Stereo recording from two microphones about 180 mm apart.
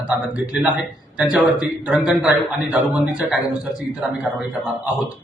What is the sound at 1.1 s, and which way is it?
A man's voice, 5° right (ahead or behind).